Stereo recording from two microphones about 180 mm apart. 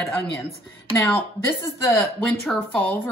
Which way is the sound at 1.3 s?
15° left (ahead or behind).